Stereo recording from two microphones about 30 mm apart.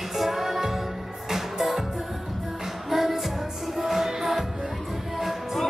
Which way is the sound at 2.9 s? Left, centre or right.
Centre.